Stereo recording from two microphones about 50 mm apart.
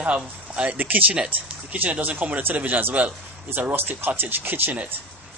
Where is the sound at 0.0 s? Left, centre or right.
Right.